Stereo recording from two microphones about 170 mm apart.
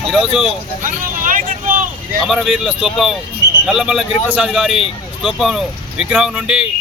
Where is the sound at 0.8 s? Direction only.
50° right (ahead or behind).